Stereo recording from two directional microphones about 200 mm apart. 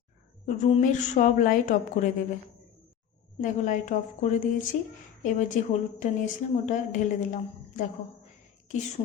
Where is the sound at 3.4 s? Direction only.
40° left (ahead or behind).